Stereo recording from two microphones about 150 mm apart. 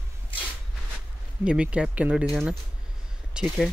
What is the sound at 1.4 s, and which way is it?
Speech, 10° right (ahead or behind).